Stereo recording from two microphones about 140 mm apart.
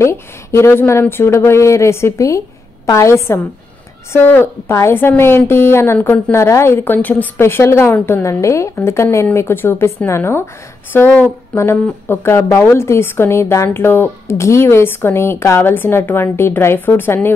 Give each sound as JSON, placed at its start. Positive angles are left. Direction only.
{"t": 0.0, "sound": "a woman's voice", "side_deg": 20}